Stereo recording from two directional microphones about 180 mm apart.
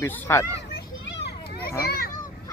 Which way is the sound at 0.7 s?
70° left (ahead or behind).